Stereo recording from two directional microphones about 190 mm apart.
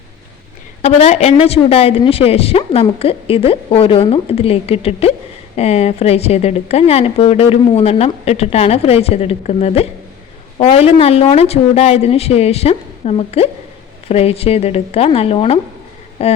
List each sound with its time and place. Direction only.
0.8 s a woman's voice: 35° left (ahead or behind)